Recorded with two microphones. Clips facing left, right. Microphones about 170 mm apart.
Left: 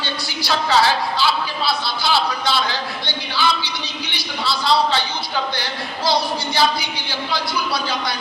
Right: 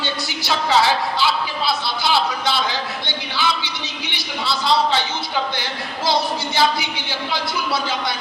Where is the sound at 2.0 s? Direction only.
20° right (ahead or behind).